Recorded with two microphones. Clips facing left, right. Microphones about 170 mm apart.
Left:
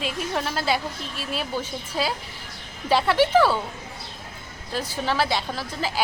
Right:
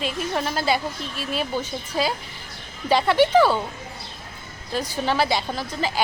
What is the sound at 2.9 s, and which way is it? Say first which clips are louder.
Speech: right 2 dB; 5° left (ahead or behind).